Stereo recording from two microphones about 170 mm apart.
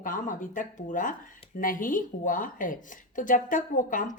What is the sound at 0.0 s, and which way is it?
A woman's voice, 50° left (ahead or behind).